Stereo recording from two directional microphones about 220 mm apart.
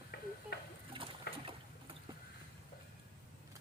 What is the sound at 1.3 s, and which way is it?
Boat, 45° left (ahead or behind).